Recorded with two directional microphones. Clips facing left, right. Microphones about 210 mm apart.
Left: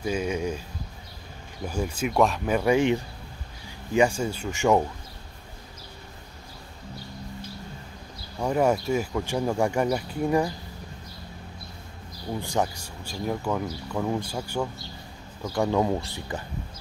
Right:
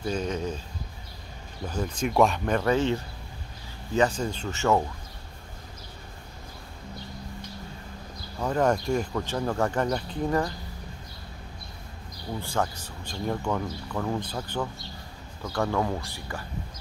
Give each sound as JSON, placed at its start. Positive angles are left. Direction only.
{"t": 0.0, "sound": "speech", "side_deg": 10}
{"t": 1.7, "sound": "speech", "side_deg": 10}
{"t": 8.4, "sound": "speech", "side_deg": 10}
{"t": 12.3, "sound": "speech", "side_deg": 15}